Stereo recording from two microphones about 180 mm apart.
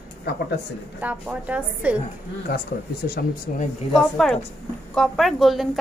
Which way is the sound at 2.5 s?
60° left (ahead or behind).